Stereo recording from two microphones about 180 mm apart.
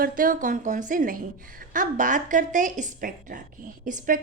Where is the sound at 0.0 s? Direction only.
50° right (ahead or behind).